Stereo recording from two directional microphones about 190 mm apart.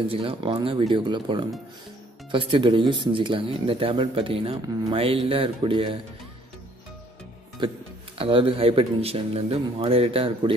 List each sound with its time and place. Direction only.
0.1 s speech: 30° right (ahead or behind)
7.6 s speech: 25° right (ahead or behind)